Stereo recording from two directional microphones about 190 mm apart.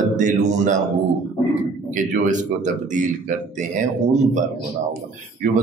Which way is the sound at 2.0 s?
40° right (ahead or behind).